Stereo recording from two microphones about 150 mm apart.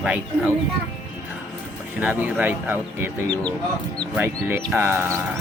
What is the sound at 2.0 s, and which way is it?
Speech, 10° right (ahead or behind).